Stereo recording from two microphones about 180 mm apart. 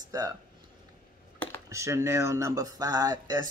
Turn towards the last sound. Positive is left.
turn(degrees=-20)  # may be behind; listen again after turning